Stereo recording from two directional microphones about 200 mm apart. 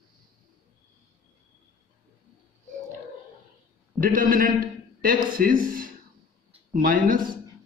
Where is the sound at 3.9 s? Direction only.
45° right (ahead or behind).